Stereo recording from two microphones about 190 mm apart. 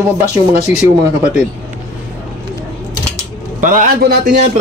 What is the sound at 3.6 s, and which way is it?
Speech, 50° right (ahead or behind).